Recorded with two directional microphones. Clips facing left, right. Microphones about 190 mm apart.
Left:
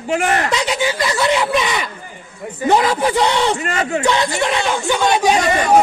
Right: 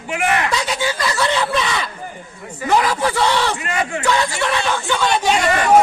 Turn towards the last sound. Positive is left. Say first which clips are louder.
# left 2 dB
turn(degrees=15)  # may be behind; listen again after turning